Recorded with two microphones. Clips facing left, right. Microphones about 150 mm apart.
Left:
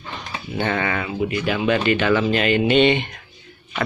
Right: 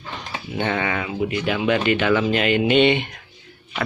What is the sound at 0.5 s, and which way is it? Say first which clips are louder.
Speech: left 1 dB; 15° right (ahead or behind).